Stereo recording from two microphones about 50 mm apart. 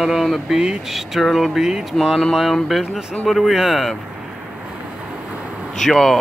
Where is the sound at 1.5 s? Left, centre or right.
Centre.